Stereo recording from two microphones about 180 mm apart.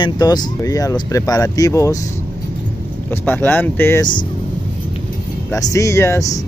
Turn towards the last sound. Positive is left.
turn(degrees=15)  # may be behind; listen again after turning